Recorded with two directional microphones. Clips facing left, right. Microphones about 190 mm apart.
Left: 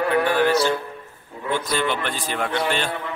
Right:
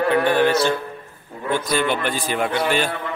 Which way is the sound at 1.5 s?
10° right (ahead or behind).